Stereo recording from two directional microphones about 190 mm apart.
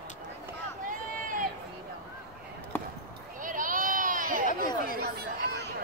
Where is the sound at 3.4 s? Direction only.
45° right (ahead or behind).